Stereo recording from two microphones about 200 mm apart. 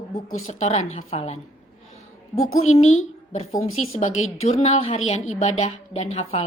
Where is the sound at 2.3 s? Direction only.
90° left.